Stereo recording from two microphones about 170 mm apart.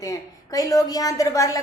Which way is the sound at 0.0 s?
20° left (ahead or behind).